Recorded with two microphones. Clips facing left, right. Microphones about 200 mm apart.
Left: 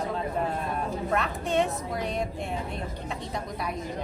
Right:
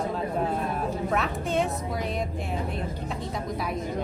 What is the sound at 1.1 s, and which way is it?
Speech, centre (ahead or behind).